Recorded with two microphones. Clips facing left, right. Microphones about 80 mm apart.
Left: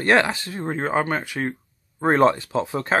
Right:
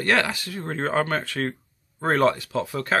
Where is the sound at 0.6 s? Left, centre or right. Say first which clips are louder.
Left 1 dB; centre.